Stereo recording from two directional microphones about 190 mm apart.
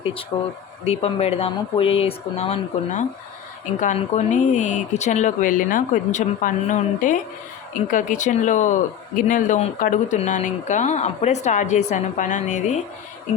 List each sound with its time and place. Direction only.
0.3 s speech: 15° left (ahead or behind)
0.9 s speech: 30° left (ahead or behind)